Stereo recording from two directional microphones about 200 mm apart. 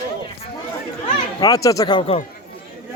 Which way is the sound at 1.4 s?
20° left (ahead or behind).